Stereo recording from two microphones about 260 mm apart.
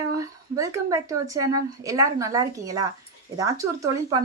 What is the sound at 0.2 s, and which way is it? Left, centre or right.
Speech, centre.